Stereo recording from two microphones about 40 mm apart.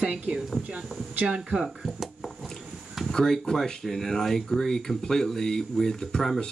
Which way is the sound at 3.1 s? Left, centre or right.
Centre.